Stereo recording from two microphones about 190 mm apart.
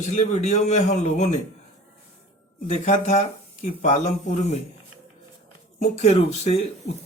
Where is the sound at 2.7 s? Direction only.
35° left (ahead or behind).